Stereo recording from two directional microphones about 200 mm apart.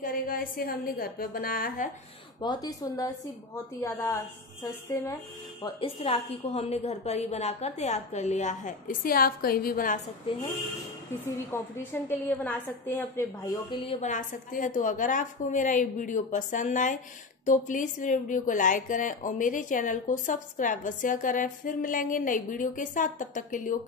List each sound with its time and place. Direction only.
0.0 s a woman's voice: 45° left (ahead or behind)
2.4 s a woman's voice: 20° left (ahead or behind)
5.6 s speech: 25° left (ahead or behind); by 10.1 s 45° left (ahead or behind)
11.5 s a woman's voice: 15° left (ahead or behind)
14.0 s speech: 40° left (ahead or behind)